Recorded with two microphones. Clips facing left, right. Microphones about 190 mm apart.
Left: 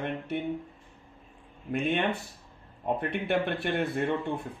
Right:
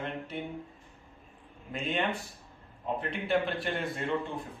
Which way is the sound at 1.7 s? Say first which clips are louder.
Left 4 dB; 60° left (ahead or behind).